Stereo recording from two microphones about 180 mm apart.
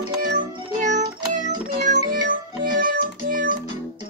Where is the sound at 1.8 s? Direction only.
45° right (ahead or behind).